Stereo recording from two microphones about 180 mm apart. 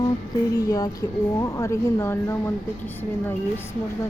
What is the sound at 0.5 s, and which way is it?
A woman's voice, 20° left (ahead or behind).